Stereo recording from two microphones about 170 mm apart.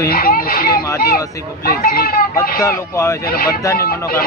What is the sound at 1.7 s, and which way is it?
Speech, 65° left (ahead or behind).